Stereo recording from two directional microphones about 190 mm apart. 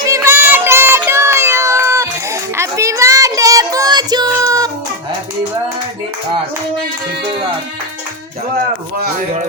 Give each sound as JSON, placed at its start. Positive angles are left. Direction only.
{"t": 0.0, "sound": "child singing", "side_deg": -15}